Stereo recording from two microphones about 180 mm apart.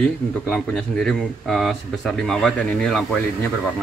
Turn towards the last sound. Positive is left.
turn(degrees=0)  # may be behind; listen again after turning